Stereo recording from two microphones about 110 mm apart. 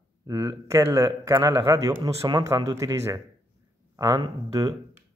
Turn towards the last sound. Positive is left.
turn(degrees=-35)  # may be behind; listen again after turning